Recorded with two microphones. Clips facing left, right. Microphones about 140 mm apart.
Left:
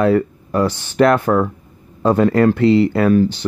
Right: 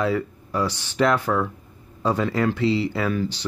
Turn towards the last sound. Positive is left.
turn(degrees=50)  # may be behind; listen again after turning